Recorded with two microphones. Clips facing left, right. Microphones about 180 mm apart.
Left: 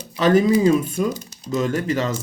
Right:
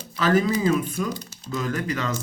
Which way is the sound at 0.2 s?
25° left (ahead or behind).